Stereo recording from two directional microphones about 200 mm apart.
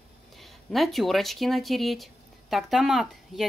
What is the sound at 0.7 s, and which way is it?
Speech, centre (ahead or behind).